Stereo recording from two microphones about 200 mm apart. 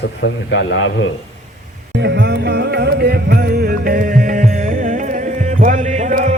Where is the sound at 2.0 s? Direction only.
60° right (ahead or behind).